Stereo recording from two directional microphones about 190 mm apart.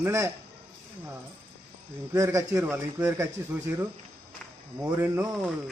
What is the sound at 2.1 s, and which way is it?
A man's voice, 15° right (ahead or behind).